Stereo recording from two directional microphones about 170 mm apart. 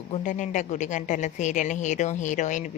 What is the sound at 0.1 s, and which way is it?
A woman's voice, 45° left (ahead or behind).